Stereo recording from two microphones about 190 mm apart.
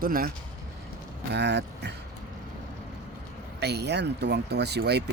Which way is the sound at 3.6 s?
60° right (ahead or behind).